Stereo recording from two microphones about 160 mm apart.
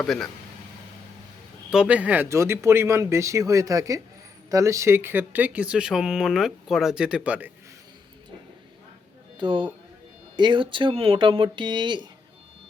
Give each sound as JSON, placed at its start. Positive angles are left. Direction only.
{"t": 0.0, "sound": "speech", "side_deg": 0}
{"t": 1.7, "sound": "speech", "side_deg": -5}
{"t": 9.4, "sound": "speech", "side_deg": -30}